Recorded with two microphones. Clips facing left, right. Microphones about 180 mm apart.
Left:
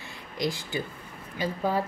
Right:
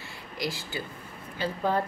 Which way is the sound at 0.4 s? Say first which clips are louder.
Left 4 dB; 20° left (ahead or behind).